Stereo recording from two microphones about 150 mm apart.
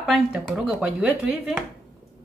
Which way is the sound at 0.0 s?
Centre (ahead or behind).